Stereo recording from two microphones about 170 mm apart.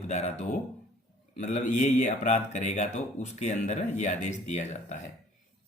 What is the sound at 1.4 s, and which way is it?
Speech, 45° left (ahead or behind).